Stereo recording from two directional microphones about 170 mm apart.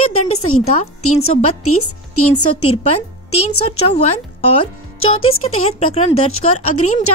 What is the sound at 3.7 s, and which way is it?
Speech, 35° left (ahead or behind).